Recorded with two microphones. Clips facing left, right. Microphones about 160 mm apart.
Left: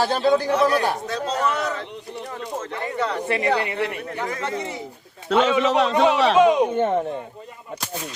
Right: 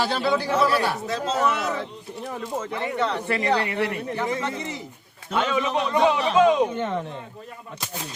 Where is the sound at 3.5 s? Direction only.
20° left (ahead or behind).